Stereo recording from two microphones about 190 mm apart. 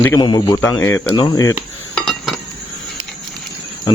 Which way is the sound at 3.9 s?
20° left (ahead or behind).